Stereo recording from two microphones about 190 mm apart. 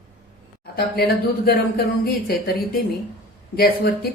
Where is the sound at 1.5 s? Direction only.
55° left (ahead or behind).